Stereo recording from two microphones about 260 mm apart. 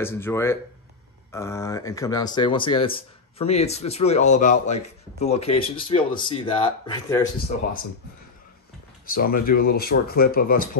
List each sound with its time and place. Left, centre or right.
0.0 s a man's voice: centre
9.0 s speech: left
9.3 s speech: left
9.6 s speech: left